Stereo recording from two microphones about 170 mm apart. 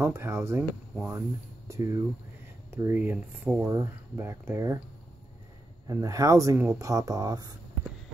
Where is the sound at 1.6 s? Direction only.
15° right (ahead or behind).